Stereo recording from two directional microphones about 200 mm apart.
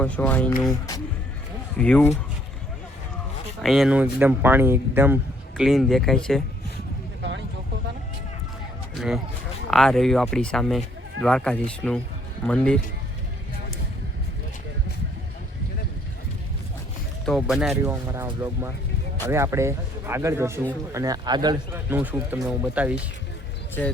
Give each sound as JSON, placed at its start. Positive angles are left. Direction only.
{"t": 0.0, "sound": "speech", "side_deg": 5}
{"t": 1.8, "sound": "speech", "side_deg": 10}
{"t": 3.6, "sound": "speech", "side_deg": 0}
{"t": 9.0, "sound": "speech", "side_deg": 0}
{"t": 17.2, "sound": "speech", "side_deg": 0}
{"t": 17.7, "sound": "speech", "side_deg": -10}
{"t": 21.8, "sound": "speech", "side_deg": -10}